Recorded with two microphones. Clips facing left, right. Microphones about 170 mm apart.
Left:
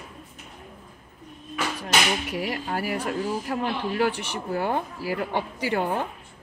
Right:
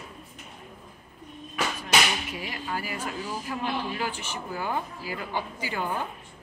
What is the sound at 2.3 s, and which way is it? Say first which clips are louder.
Speech: left 5 dB; 65° left (ahead or behind).